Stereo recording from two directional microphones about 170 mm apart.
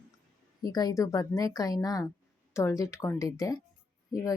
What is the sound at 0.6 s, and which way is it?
A woman's voice, 25° left (ahead or behind).